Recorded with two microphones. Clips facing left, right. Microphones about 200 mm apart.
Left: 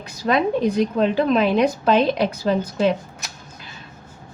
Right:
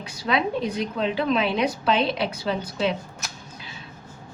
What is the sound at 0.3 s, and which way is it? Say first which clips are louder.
A woman's voice: left 5 dB; 50° left (ahead or behind).